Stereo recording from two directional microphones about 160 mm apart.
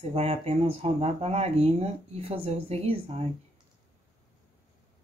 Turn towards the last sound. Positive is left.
turn(degrees=-40)  # may be behind; listen again after turning